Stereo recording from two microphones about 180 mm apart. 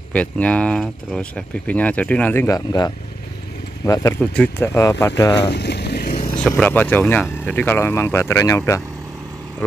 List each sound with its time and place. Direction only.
0.1 s speech: 10° left (ahead or behind)
5.5 s boat: 65° left (ahead or behind)
6.5 s speech: 10° left (ahead or behind)